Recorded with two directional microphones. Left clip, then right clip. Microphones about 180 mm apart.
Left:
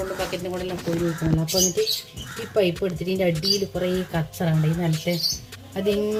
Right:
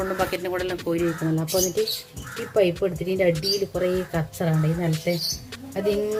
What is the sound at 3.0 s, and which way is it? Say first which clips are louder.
Speech: even; 15° right (ahead or behind).